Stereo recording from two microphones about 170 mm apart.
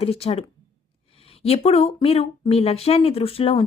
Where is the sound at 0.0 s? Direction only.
35° left (ahead or behind).